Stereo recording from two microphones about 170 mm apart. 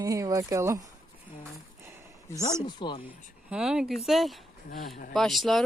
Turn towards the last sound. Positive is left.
turn(degrees=0)  # may be behind; listen again after turning